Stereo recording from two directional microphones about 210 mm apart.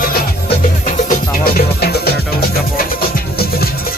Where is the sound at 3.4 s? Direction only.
45° left (ahead or behind).